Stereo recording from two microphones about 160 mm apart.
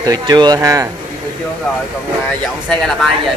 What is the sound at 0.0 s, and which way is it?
Speech, 25° right (ahead or behind).